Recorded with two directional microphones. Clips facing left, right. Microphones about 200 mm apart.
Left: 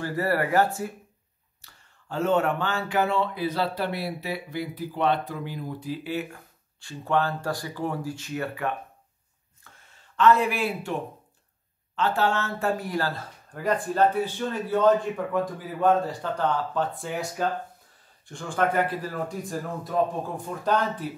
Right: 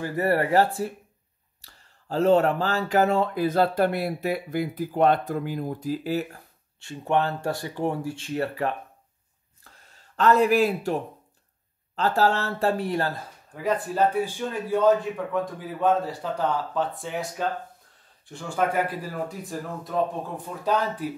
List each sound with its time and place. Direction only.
0.0 s speech: 20° right (ahead or behind); by 6.4 s 40° right (ahead or behind)
6.8 s speech: 20° right (ahead or behind)
9.7 s a sound: 40° right (ahead or behind)
11.9 s speech: 35° right (ahead or behind)
13.5 s speech: 5° right (ahead or behind)